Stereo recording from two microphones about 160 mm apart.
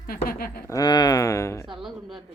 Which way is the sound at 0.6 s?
20° left (ahead or behind).